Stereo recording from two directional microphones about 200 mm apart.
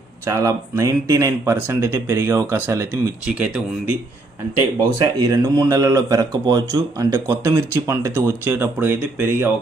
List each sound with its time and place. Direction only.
0.3 s speech: 15° right (ahead or behind)
4.9 s speech: 15° right (ahead or behind)